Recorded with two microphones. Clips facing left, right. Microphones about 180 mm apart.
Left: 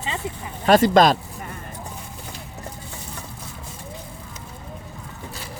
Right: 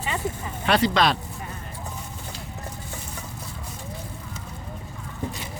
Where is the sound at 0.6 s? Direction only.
45° left (ahead or behind).